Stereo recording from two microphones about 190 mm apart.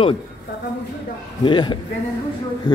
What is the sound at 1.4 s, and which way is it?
Speech, 25° left (ahead or behind).